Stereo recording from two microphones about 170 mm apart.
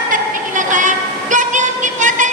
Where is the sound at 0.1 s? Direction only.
50° right (ahead or behind).